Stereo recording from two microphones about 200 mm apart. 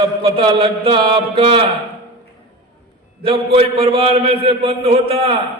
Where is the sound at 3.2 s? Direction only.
30° right (ahead or behind).